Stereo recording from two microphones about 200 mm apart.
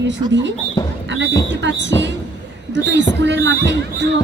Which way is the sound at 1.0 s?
65° right (ahead or behind).